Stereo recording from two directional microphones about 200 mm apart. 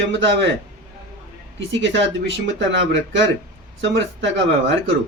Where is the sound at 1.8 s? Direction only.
65° right (ahead or behind).